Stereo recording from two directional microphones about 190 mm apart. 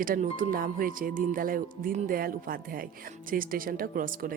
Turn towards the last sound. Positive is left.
turn(degrees=-45)  # may be behind; listen again after turning